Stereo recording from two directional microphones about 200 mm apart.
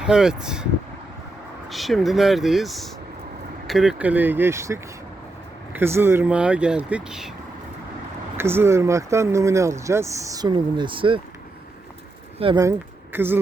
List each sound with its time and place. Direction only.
0.0 s speech: 5° right (ahead or behind)
1.7 s speech: centre (ahead or behind)
8.4 s speech: 10° right (ahead or behind)
12.4 s speech: 25° right (ahead or behind)
13.1 s speech: 10° right (ahead or behind)